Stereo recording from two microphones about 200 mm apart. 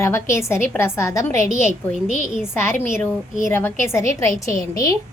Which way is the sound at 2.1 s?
35° left (ahead or behind).